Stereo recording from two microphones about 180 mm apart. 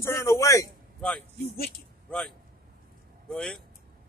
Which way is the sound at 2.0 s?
5° left (ahead or behind).